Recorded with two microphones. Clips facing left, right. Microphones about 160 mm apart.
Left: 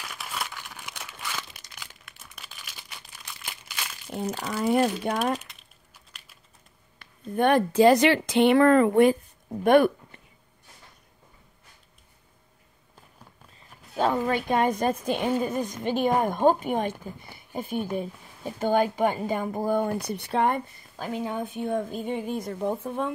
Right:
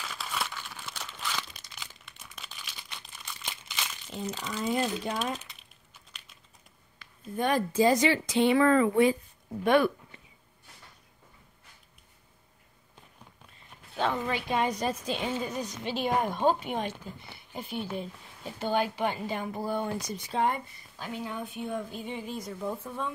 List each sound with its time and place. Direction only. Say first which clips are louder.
0.0 s crumpling: even; 15° left (ahead or behind)
4.1 s speech: left 6 dB; 60° left (ahead or behind)
7.0 s speech: left 7 dB; 60° left (ahead or behind)
13.9 s speech: left 5 dB; 40° left (ahead or behind)